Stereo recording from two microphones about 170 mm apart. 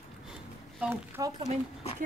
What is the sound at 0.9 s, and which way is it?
Speech, 15° right (ahead or behind).